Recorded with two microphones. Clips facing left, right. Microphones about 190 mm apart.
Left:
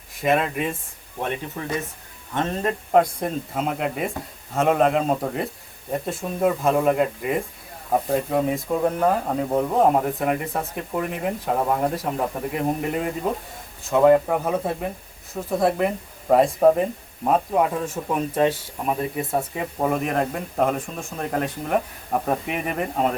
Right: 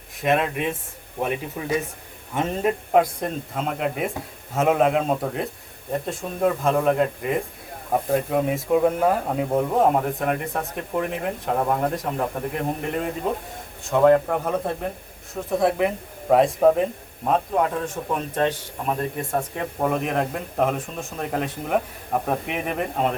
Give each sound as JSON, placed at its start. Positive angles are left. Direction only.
{"t": 0.2, "sound": "speech", "side_deg": 0}